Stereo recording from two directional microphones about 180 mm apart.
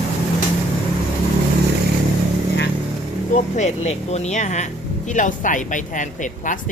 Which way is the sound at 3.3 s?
40° left (ahead or behind).